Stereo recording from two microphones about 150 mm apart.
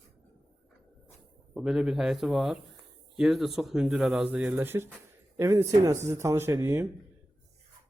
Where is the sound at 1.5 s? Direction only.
5° right (ahead or behind).